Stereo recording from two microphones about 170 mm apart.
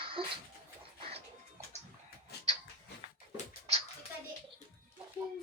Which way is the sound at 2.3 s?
75° left (ahead or behind).